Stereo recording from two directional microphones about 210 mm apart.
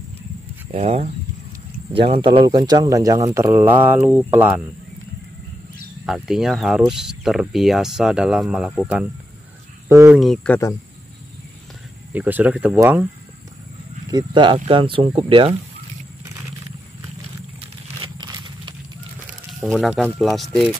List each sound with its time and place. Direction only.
0.7 s speech: 30° right (ahead or behind); by 4.6 s 10° right (ahead or behind)
6.0 s speech: centre (ahead or behind)
10.2 s speech: 5° left (ahead or behind)
12.1 s speech: 10° right (ahead or behind)
14.0 s speech: 20° right (ahead or behind)
18.0 s scissors: 20° right (ahead or behind)
19.6 s speech: centre (ahead or behind)